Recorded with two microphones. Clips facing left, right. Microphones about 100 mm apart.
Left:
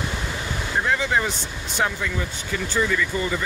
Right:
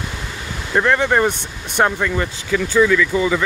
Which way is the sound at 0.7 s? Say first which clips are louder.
Right 7 dB; 65° right (ahead or behind).